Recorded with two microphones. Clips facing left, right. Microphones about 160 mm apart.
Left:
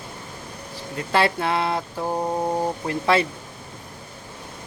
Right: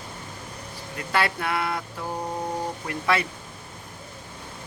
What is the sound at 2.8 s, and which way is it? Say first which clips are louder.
Speech: left 4 dB; 30° left (ahead or behind).